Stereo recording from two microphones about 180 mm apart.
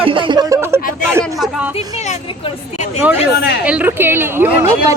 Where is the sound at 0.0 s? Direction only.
30° right (ahead or behind); by 1.2 s 15° right (ahead or behind).